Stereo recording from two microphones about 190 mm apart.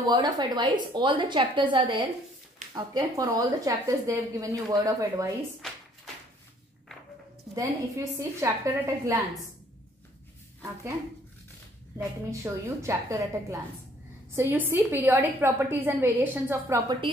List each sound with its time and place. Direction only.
0.1 s a woman's voice: 20° right (ahead or behind)
7.5 s a woman's voice: 15° right (ahead or behind)
12.3 s a woman's voice: 15° right (ahead or behind)